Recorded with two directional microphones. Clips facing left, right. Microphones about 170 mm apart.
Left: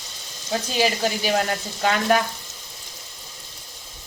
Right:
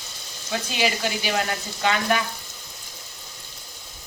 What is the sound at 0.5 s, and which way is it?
Speech, 40° left (ahead or behind).